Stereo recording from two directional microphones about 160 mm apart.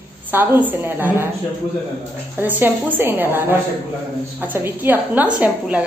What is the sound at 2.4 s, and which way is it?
Speech, 10° right (ahead or behind).